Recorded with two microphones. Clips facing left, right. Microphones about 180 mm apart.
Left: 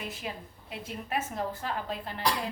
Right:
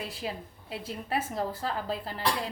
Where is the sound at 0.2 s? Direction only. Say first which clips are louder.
Right 3 dB; 30° right (ahead or behind).